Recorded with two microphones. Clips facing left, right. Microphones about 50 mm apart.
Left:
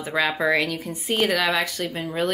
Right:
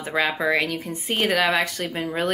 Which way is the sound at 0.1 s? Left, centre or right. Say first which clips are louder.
Even; right.